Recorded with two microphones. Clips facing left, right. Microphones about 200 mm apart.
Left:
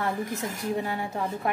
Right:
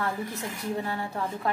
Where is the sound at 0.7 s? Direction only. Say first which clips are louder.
Left 1 dB; 15° left (ahead or behind).